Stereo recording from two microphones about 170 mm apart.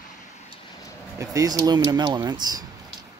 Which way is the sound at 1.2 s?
20° right (ahead or behind).